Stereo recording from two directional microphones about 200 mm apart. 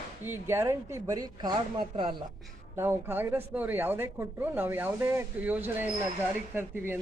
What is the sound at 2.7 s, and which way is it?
Speech, 10° right (ahead or behind).